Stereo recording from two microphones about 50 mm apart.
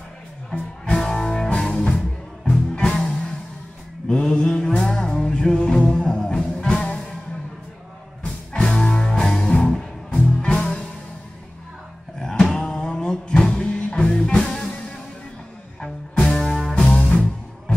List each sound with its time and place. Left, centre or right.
0.8 s music: centre
4.1 s mantra: centre
4.9 s music: centre
8.5 s music: centre
12.2 s a sound: centre
13.7 s music: left
15.8 s music: centre
16.9 s music: left